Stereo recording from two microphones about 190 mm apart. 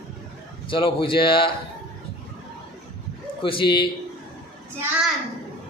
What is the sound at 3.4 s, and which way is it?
Speech, 25° left (ahead or behind).